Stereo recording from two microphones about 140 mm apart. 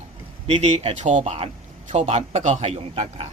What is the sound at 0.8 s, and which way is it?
A man's voice, 55° right (ahead or behind).